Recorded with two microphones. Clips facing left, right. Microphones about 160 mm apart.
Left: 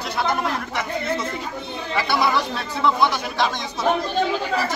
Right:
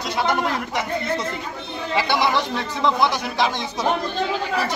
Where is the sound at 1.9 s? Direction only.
20° right (ahead or behind).